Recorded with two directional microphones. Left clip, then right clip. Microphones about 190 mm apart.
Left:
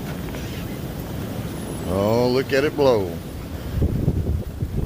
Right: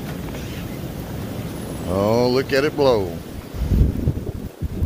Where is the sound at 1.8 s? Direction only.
10° right (ahead or behind).